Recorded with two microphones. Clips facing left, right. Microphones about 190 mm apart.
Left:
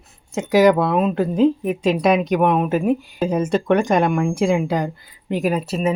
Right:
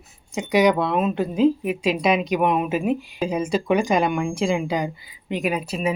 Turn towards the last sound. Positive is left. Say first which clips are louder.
# left 4 dB
turn(degrees=0)  # may be behind; listen again after turning